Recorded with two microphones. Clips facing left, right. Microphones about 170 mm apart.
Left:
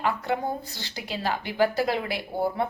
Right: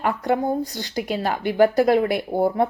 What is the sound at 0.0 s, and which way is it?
A woman's voice, 45° right (ahead or behind).